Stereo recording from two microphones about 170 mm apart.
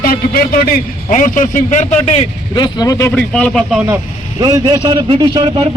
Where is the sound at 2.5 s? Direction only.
25° left (ahead or behind).